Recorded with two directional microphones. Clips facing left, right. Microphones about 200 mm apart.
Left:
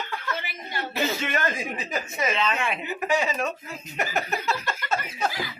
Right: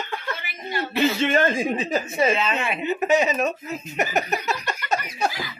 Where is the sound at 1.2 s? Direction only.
30° right (ahead or behind).